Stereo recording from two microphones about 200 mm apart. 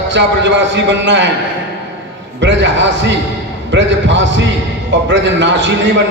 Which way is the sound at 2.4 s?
65° right (ahead or behind).